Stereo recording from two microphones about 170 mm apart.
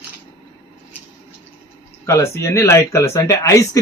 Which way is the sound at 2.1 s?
15° left (ahead or behind).